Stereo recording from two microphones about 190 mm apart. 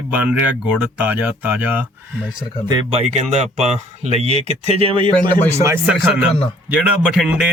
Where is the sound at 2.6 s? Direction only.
30° right (ahead or behind).